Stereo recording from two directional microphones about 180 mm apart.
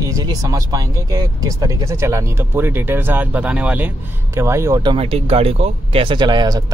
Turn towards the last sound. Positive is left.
turn(degrees=-25)  # may be behind; listen again after turning